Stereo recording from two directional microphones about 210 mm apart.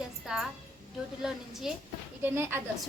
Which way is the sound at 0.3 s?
5° right (ahead or behind).